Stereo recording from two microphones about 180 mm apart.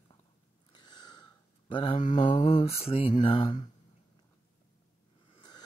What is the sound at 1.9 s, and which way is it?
Mantra, 45° left (ahead or behind).